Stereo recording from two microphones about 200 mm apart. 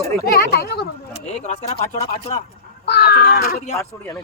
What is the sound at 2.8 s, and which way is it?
Speech, 55° left (ahead or behind).